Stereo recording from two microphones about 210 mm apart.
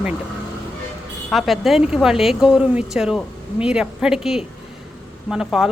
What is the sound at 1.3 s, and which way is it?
Speech, centre (ahead or behind).